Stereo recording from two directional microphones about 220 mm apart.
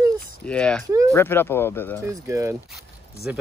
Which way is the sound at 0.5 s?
5° left (ahead or behind).